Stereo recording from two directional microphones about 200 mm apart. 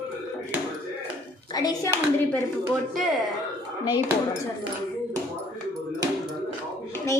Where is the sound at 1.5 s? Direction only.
15° left (ahead or behind).